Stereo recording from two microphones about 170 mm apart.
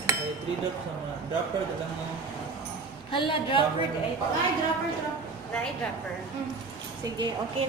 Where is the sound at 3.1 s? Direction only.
30° left (ahead or behind).